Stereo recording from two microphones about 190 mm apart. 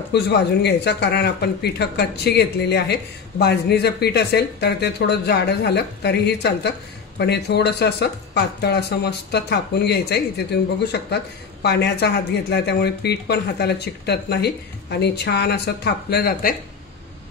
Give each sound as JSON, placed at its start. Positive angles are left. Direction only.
{"t": 0.1, "sound": "speech", "side_deg": 60}